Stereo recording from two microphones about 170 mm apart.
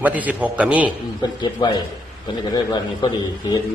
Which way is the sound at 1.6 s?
25° left (ahead or behind).